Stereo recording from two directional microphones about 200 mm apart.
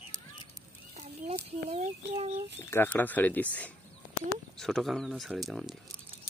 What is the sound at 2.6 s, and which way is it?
Speech, 10° left (ahead or behind).